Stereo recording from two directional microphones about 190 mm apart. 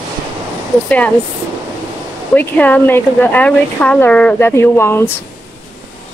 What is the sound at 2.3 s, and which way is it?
Speech, 10° left (ahead or behind).